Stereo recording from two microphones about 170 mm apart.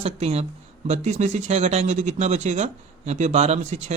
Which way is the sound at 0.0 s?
40° right (ahead or behind).